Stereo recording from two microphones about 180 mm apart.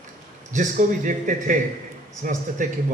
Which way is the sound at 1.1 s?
45° right (ahead or behind).